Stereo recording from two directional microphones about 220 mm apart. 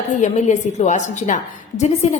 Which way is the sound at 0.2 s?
35° left (ahead or behind).